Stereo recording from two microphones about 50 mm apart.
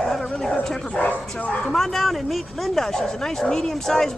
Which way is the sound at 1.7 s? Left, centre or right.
Centre.